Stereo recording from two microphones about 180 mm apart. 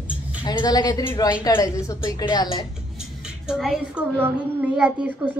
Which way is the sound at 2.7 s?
5° right (ahead or behind).